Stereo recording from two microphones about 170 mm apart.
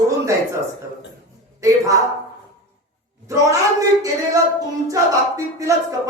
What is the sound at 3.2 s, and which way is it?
Speech, 20° right (ahead or behind).